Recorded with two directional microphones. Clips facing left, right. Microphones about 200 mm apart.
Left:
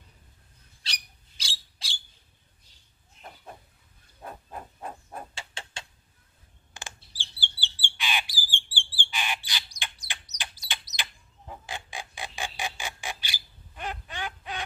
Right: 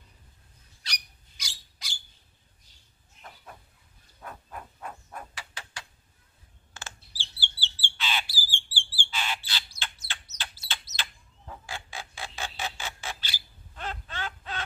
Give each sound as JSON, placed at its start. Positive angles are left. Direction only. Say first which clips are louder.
{"t": 0.8, "sound": "owl", "louder": "even", "side_deg": 30}
{"t": 3.2, "sound": "a sound", "louder": "left 3 dB", "side_deg": 30}
{"t": 6.7, "sound": "bird", "louder": "left 1 dB", "side_deg": 15}